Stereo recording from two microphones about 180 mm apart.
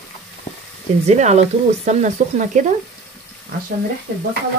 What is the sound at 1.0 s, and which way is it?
Speech, 40° right (ahead or behind).